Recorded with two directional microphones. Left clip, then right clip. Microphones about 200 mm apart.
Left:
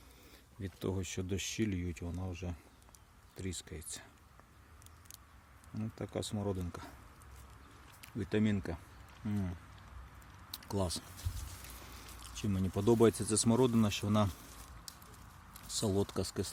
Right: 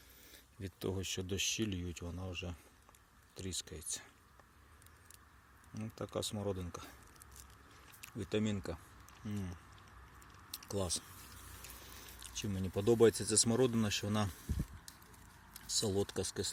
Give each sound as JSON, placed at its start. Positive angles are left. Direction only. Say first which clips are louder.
{"t": 0.6, "sound": "speech", "louder": "left 1 dB", "side_deg": 5}
{"t": 5.7, "sound": "speech", "louder": "left 1 dB", "side_deg": 10}
{"t": 8.0, "sound": "speech", "louder": "left 3 dB", "side_deg": 10}
{"t": 10.5, "sound": "a sound", "louder": "left 2 dB", "side_deg": 15}
{"t": 12.2, "sound": "speech", "louder": "left 3 dB", "side_deg": 10}
{"t": 15.6, "sound": "speech", "louder": "left 1 dB", "side_deg": 10}